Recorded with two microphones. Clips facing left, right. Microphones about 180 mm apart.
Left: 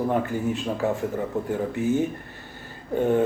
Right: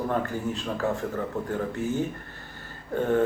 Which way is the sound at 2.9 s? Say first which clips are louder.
Left 3 dB; 15° left (ahead or behind).